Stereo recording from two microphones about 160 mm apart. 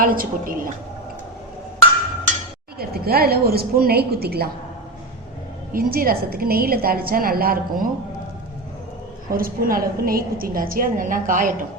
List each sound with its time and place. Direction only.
0.0 s a woman's voice: 60° right (ahead or behind)
2.7 s a woman's voice: 75° right (ahead or behind)
5.7 s a woman's voice: 70° right (ahead or behind)
9.3 s a woman's voice: 65° right (ahead or behind)